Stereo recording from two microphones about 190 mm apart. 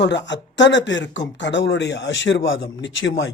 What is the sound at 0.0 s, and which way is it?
Speech, 65° left (ahead or behind).